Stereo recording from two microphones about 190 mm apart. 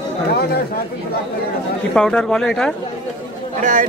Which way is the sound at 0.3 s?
55° left (ahead or behind).